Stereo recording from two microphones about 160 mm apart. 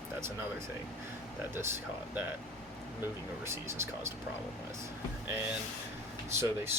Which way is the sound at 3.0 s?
15° right (ahead or behind).